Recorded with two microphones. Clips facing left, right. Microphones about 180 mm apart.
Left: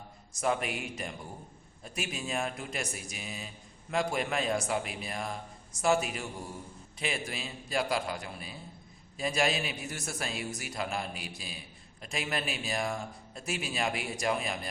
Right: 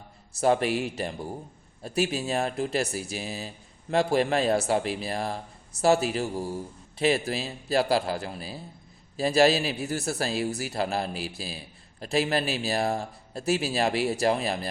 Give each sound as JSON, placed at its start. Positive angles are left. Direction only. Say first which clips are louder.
{"t": 0.4, "sound": "a man's voice", "louder": "right 8 dB", "side_deg": -35}